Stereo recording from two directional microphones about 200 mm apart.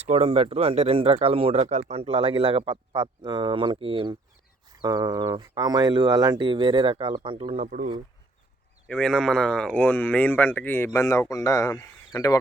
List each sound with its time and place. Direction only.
0.0 s speech: 30° right (ahead or behind)
8.9 s speech: 5° left (ahead or behind)